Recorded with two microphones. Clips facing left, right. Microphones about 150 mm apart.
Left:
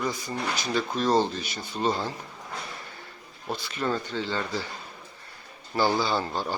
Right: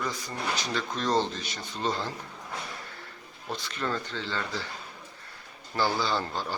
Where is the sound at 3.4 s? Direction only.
10° left (ahead or behind).